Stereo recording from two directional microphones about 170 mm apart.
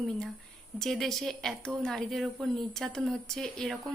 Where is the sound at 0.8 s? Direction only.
Centre (ahead or behind).